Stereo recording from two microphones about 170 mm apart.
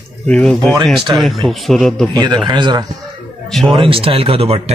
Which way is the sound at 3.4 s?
Centre (ahead or behind).